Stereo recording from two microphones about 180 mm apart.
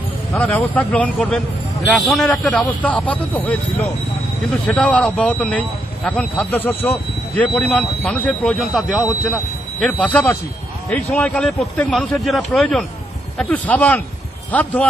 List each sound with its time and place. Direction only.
0.3 s a man's voice: 10° left (ahead or behind)